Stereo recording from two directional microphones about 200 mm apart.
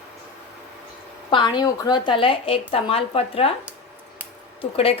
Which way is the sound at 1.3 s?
20° left (ahead or behind).